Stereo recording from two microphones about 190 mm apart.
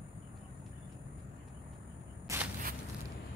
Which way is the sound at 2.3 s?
15° right (ahead or behind).